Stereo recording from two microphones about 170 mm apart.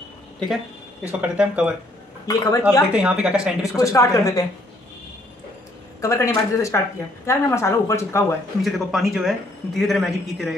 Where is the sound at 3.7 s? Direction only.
20° left (ahead or behind).